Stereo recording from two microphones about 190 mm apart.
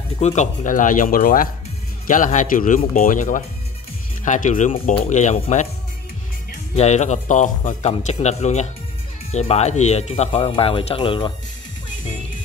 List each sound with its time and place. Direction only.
0.2 s speech: 35° left (ahead or behind)
6.7 s speech: 35° left (ahead or behind)